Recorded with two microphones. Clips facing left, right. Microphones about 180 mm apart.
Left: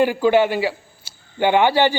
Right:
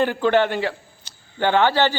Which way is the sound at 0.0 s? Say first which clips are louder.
Left 3 dB; 10° left (ahead or behind).